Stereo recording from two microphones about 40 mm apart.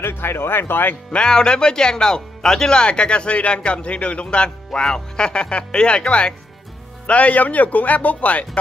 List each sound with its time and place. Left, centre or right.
0.0 s speech: left
1.1 s a man's voice: left